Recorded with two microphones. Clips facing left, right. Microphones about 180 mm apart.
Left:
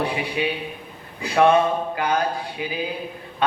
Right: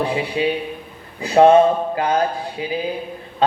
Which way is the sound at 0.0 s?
30° right (ahead or behind).